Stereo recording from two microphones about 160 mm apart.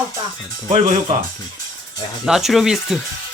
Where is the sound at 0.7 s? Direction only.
50° right (ahead or behind).